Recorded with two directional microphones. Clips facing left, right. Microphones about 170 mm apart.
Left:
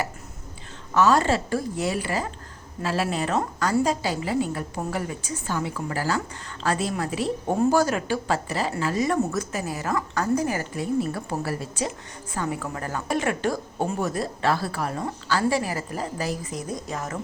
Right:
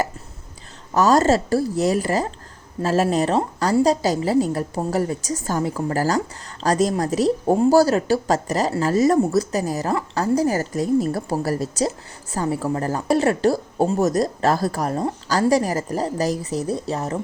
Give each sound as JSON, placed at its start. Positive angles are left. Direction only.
{"t": 0.9, "sound": "a woman's voice", "side_deg": -40}